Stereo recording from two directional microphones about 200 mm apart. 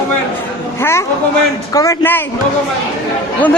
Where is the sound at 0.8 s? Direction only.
10° left (ahead or behind).